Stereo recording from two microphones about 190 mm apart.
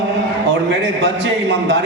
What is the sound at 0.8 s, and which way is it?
A man's voice, 65° right (ahead or behind).